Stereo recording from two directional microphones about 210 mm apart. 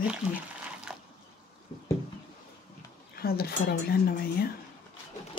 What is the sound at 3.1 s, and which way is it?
Speech, 45° left (ahead or behind).